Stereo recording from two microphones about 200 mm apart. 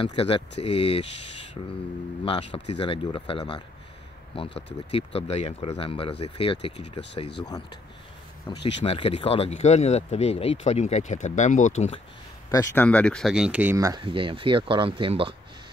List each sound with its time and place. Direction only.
0.0 s speech: 30° left (ahead or behind)
2.2 s speech: 25° left (ahead or behind)
4.9 s speech: 30° left (ahead or behind)
12.4 s speech: 15° left (ahead or behind); by 15.3 s 25° right (ahead or behind)